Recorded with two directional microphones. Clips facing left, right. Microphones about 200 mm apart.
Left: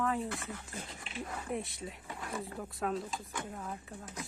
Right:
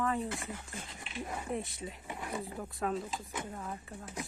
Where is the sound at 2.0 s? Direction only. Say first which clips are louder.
Right 2 dB; 20° right (ahead or behind).